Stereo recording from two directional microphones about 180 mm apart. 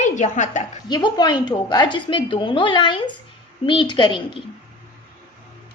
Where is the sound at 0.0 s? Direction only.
40° left (ahead or behind).